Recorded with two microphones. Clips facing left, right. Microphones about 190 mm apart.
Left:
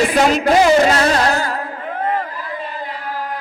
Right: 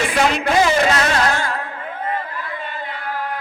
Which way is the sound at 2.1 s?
40° left (ahead or behind).